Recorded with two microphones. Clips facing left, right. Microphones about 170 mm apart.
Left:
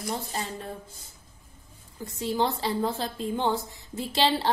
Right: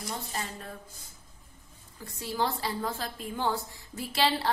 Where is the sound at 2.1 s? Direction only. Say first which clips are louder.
Left 4 dB; 25° left (ahead or behind).